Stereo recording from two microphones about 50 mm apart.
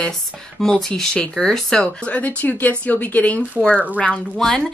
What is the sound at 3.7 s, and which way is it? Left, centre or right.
Speech, right.